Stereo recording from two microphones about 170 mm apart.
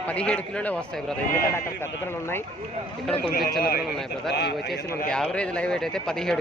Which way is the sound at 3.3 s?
65° left (ahead or behind).